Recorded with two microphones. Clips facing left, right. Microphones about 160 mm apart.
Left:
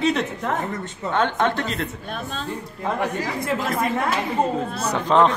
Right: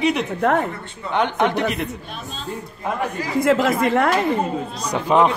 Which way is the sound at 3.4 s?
90° right.